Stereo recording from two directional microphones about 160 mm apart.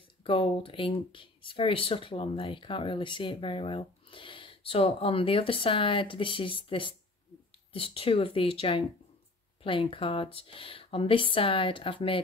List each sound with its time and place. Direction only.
0.2 s speech: 35° left (ahead or behind)